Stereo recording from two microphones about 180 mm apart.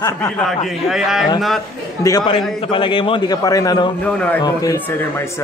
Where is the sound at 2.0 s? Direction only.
20° left (ahead or behind).